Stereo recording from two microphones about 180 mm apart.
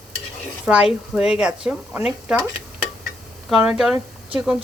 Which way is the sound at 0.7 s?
5° right (ahead or behind).